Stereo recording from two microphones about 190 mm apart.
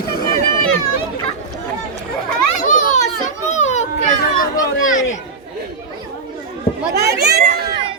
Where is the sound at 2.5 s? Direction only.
40° left (ahead or behind).